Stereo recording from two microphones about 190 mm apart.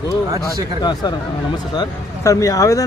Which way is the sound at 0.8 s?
20° left (ahead or behind).